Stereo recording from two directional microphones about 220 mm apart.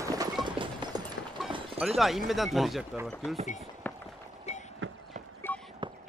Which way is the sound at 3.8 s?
10° left (ahead or behind).